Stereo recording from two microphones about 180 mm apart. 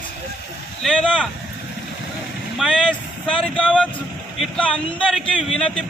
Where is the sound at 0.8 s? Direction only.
Centre (ahead or behind).